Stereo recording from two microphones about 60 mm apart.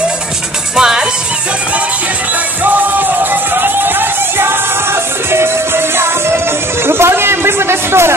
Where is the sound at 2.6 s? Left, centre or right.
Right.